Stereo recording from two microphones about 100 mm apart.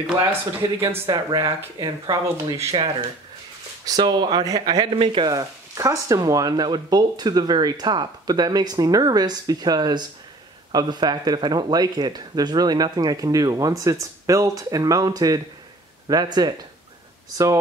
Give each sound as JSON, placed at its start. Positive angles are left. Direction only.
{"t": 0.2, "sound": "speech", "side_deg": -30}
{"t": 1.0, "sound": "speech", "side_deg": -50}
{"t": 2.6, "sound": "speech", "side_deg": -70}
{"t": 3.8, "sound": "speech", "side_deg": -45}
{"t": 4.9, "sound": "speech", "side_deg": -65}
{"t": 5.2, "sound": "speech", "side_deg": -35}